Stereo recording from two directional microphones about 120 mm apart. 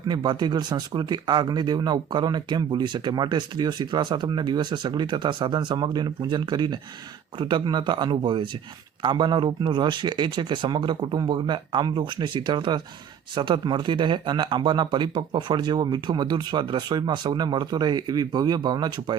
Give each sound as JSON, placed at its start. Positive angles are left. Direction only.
{"t": 0.1, "sound": "speech", "side_deg": -35}